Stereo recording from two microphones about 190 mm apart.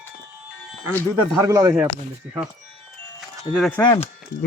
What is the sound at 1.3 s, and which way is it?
Speech, 20° right (ahead or behind).